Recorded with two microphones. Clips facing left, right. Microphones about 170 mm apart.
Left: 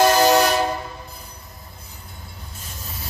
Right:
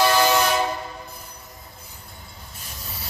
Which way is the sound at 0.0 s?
40° left (ahead or behind).